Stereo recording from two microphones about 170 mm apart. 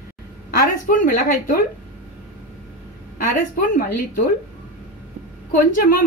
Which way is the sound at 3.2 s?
50° left (ahead or behind).